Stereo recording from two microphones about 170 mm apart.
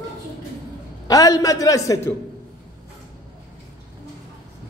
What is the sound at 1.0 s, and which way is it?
A man's voice, 20° left (ahead or behind).